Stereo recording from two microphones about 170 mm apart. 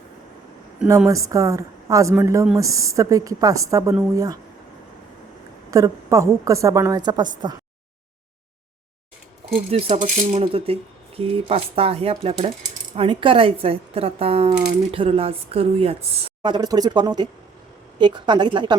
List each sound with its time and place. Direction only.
0.9 s a woman's voice: 20° right (ahead or behind)
5.7 s a woman's voice: 20° right (ahead or behind)
9.6 s a woman's voice: 35° right (ahead or behind)